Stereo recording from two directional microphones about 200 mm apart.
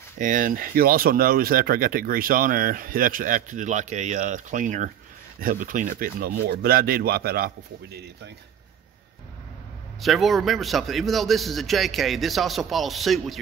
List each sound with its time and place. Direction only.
0.2 s speech: 40° right (ahead or behind)
10.0 s a man's voice: centre (ahead or behind)